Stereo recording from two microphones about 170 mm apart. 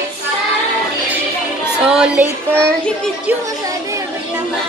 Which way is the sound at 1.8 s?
5° right (ahead or behind).